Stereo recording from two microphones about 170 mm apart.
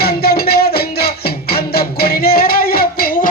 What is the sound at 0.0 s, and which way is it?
Music, 65° left (ahead or behind).